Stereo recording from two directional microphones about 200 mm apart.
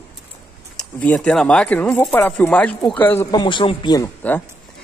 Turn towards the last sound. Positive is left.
turn(degrees=20)  # may be behind; listen again after turning